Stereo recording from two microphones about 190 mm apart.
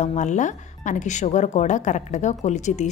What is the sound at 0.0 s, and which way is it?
Speech, 40° left (ahead or behind).